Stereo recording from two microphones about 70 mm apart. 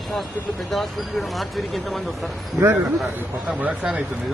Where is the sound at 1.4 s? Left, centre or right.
Centre.